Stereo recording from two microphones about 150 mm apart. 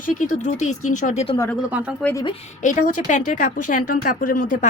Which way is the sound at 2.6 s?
60° left (ahead or behind).